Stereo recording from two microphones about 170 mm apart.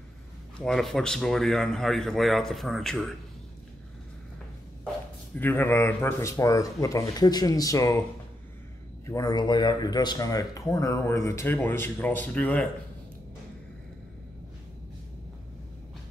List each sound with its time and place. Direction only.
0.6 s a man's voice: centre (ahead or behind)
5.4 s speech: 10° left (ahead or behind)
9.0 s speech: 20° left (ahead or behind)